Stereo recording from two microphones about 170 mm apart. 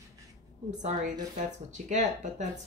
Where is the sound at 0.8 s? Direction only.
50° right (ahead or behind).